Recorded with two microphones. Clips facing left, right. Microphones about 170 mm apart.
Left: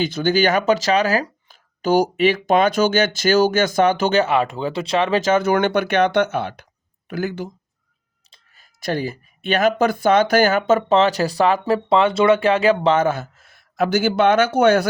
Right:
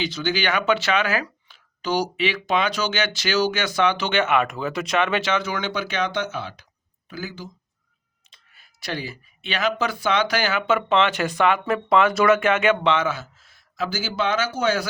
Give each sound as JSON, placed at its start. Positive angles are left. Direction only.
{"t": 0.0, "sound": "speech", "side_deg": 50}
{"t": 8.3, "sound": "speech", "side_deg": 40}